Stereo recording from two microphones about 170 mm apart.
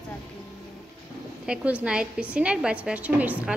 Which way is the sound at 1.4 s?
5° right (ahead or behind).